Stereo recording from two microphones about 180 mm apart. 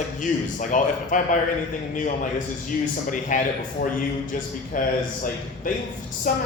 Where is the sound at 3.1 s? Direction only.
45° left (ahead or behind).